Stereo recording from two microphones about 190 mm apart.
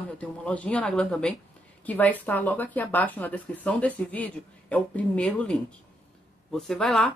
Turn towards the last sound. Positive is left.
turn(degrees=0)  # may be behind; listen again after turning